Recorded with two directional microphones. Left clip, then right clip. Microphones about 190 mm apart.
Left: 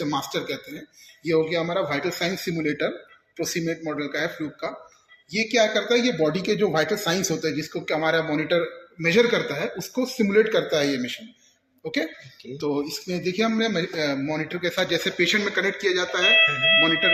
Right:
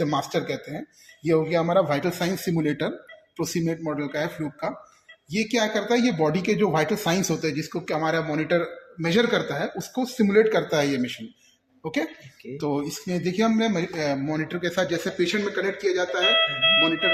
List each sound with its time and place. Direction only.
0.0 s speech: 70° right (ahead or behind); by 14.9 s 40° right (ahead or behind)
15.0 s speech: 15° right (ahead or behind)
15.4 s speech: centre (ahead or behind)